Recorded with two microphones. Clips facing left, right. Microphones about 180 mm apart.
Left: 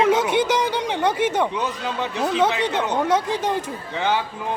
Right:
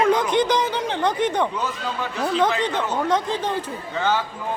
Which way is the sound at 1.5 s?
20° left (ahead or behind).